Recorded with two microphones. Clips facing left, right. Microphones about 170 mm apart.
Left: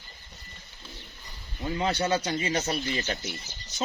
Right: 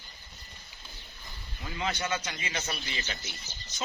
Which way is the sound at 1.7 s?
35° left (ahead or behind).